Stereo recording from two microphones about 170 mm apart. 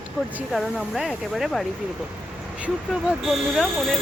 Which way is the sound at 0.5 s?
Centre (ahead or behind).